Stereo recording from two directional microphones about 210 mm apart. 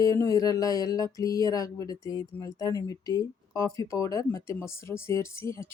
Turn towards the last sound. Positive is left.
turn(degrees=15)  # may be behind; listen again after turning